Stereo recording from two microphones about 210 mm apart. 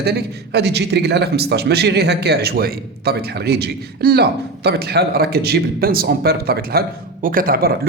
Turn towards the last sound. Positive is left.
turn(degrees=-45)  # may be behind; listen again after turning